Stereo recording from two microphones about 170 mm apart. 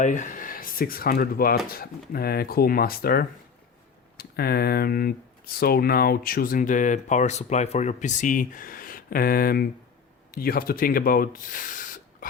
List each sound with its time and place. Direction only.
0.0 s speech: 45° left (ahead or behind)